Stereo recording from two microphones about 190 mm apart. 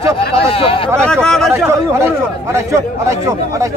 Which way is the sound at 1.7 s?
15° right (ahead or behind).